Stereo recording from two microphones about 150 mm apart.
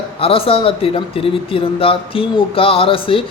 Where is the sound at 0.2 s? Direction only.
40° left (ahead or behind).